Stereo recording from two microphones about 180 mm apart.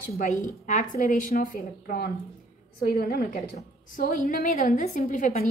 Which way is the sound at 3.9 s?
50° left (ahead or behind).